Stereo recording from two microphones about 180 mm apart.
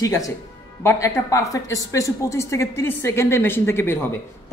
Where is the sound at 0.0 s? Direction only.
20° left (ahead or behind).